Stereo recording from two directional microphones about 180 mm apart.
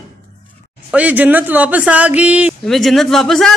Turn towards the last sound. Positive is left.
turn(degrees=0)  # may be behind; listen again after turning